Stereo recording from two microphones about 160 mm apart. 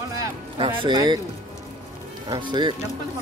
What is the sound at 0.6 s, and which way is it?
Speech, 30° right (ahead or behind).